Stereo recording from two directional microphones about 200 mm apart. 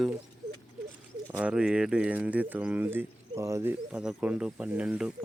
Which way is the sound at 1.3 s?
5° right (ahead or behind).